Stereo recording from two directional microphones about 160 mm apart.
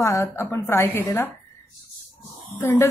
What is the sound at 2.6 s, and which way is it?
Speech, 15° left (ahead or behind).